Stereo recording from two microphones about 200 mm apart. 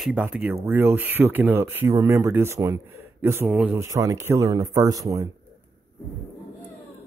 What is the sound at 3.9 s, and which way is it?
Speech, 15° right (ahead or behind).